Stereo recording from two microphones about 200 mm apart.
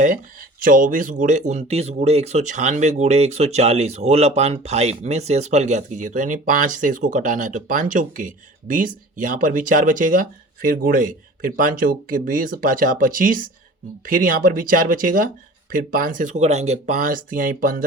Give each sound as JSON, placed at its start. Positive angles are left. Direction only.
{"t": 0.6, "sound": "speech", "side_deg": -45}